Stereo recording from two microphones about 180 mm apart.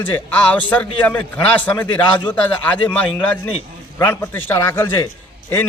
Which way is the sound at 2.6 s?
5° left (ahead or behind).